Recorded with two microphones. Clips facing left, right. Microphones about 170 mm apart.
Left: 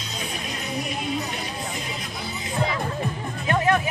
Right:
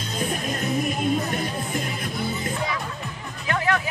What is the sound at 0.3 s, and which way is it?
Music, 50° right (ahead or behind).